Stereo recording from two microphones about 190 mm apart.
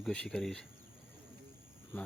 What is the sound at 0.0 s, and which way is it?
Speech, 5° left (ahead or behind).